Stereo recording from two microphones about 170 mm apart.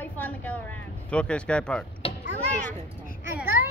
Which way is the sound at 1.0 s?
5° left (ahead or behind).